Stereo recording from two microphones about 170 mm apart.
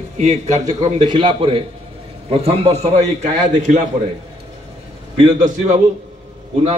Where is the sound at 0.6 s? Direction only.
25° right (ahead or behind); by 3.8 s 45° right (ahead or behind).